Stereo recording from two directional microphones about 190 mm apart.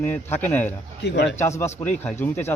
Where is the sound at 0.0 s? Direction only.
10° left (ahead or behind).